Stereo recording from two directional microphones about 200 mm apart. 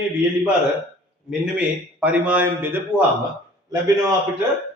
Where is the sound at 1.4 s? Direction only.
5° right (ahead or behind).